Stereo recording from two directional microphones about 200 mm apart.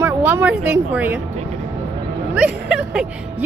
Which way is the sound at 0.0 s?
10° right (ahead or behind).